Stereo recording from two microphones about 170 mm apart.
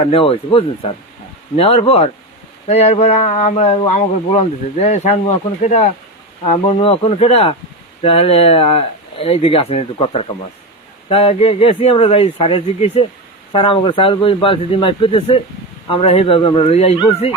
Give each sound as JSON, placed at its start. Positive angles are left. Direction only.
{"t": 0.1, "sound": "speech", "side_deg": 35}